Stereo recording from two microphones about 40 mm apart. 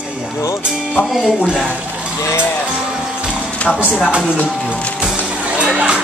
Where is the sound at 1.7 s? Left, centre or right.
Right.